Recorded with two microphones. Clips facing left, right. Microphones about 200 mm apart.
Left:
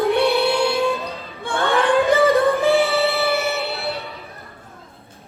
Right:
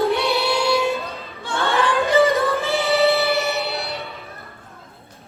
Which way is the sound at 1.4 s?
55° left (ahead or behind).